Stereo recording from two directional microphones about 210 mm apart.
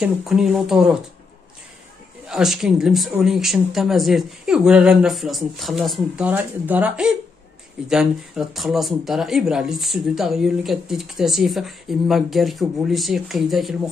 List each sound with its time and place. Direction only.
0.0 s speech: 5° right (ahead or behind)
2.2 s speech: centre (ahead or behind)